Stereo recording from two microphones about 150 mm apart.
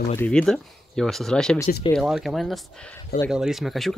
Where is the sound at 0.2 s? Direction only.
5° left (ahead or behind).